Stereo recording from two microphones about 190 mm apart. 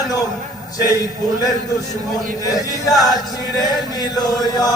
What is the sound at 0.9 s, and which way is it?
A man's voice, 20° left (ahead or behind).